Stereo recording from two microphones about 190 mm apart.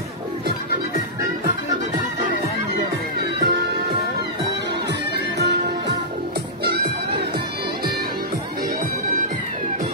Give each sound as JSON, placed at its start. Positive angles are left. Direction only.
{"t": 3.3, "sound": "music", "side_deg": -55}
{"t": 6.6, "sound": "music", "side_deg": -55}